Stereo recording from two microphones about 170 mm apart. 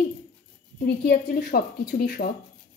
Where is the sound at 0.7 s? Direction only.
75° left (ahead or behind).